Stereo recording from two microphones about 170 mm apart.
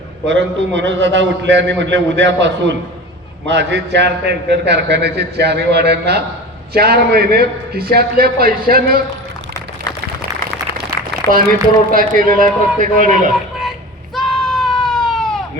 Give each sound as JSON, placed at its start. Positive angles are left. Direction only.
{"t": 0.3, "sound": "a man's voice", "side_deg": -90}
{"t": 11.3, "sound": "a man's voice", "side_deg": -55}
{"t": 14.2, "sound": "a sound", "side_deg": 0}